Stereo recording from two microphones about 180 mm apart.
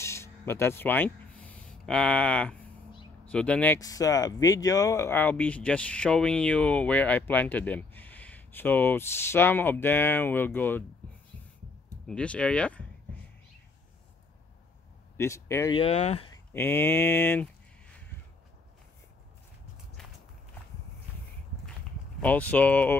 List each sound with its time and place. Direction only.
0.0 s a sound: 15° left (ahead or behind)
3.3 s speech: 5° left (ahead or behind)
3.8 s speech: 20° left (ahead or behind)
12.1 s speech: 5° left (ahead or behind)
15.1 s speech: 15° left (ahead or behind)
15.7 s speech: 35° left (ahead or behind)
16.3 s speech: 10° left (ahead or behind)
20.0 s walk: 5° left (ahead or behind)
22.2 s speech: 10° left (ahead or behind)